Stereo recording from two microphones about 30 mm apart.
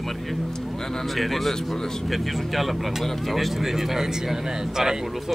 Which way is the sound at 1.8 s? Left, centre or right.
Centre.